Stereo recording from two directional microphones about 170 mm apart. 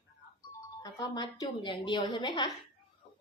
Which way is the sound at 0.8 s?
20° left (ahead or behind).